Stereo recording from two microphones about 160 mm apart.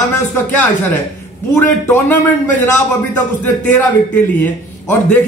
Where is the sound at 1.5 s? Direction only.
15° left (ahead or behind).